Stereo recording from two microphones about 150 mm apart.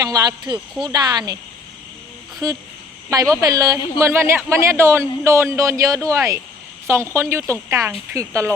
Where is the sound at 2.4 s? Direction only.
20° right (ahead or behind).